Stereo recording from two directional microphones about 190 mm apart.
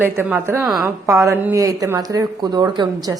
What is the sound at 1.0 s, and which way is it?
A woman's voice, 15° right (ahead or behind).